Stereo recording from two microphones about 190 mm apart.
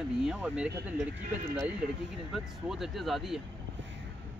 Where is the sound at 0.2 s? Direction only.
5° right (ahead or behind).